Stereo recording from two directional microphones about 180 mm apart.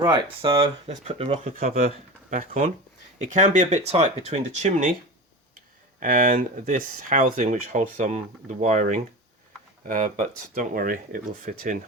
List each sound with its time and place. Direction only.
0.0 s speech: 20° right (ahead or behind)
0.9 s speech: 35° right (ahead or behind)
1.5 s speech: 55° right (ahead or behind)
6.0 s speech: 50° right (ahead or behind)